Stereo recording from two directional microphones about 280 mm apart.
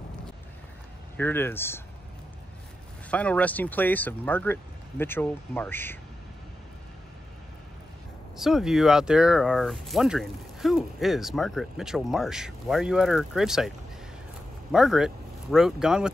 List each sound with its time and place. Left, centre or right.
1.1 s speech: centre
3.1 s speech: centre
8.4 s speech: centre